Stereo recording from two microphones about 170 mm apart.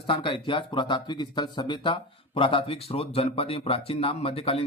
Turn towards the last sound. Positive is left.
turn(degrees=35)  # may be behind; listen again after turning